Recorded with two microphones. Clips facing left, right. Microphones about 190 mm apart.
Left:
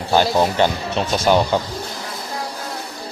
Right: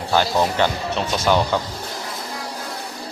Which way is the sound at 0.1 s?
20° left (ahead or behind).